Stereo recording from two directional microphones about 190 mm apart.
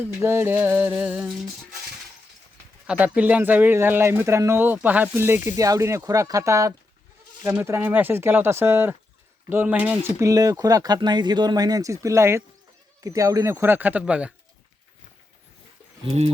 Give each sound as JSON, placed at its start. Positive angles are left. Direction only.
{"t": 0.2, "sound": "speech", "side_deg": -15}
{"t": 2.8, "sound": "speech", "side_deg": -5}
{"t": 16.0, "sound": "speech", "side_deg": -30}